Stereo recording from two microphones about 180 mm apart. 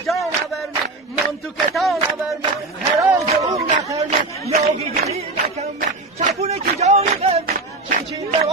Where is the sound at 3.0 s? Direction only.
15° right (ahead or behind).